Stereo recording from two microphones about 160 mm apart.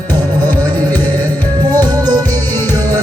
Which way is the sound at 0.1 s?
25° right (ahead or behind).